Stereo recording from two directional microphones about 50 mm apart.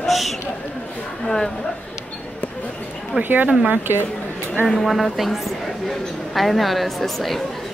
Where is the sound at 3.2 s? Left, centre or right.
Right.